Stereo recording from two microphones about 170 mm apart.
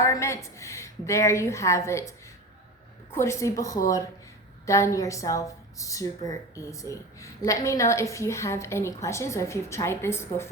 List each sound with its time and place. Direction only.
0.0 s a woman's voice: 15° left (ahead or behind)